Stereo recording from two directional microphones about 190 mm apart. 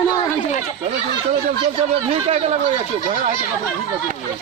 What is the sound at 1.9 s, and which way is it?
Speech, 30° right (ahead or behind).